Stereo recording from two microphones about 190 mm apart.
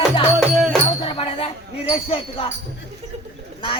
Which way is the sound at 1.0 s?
30° left (ahead or behind).